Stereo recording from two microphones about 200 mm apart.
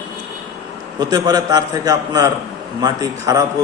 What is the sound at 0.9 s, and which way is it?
A man's voice, 20° right (ahead or behind).